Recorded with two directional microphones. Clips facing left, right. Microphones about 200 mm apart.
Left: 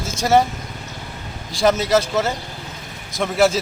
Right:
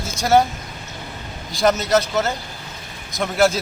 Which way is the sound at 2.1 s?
5° left (ahead or behind).